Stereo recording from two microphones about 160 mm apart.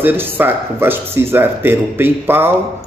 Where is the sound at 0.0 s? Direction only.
15° right (ahead or behind).